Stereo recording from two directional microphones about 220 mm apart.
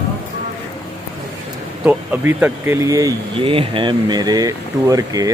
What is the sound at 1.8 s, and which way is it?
Speech, 5° right (ahead or behind).